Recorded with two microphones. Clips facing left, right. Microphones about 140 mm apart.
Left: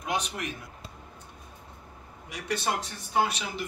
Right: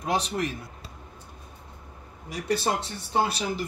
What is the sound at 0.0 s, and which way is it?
Speech, 35° right (ahead or behind).